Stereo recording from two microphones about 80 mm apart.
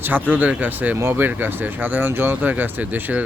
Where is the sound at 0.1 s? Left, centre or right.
Right.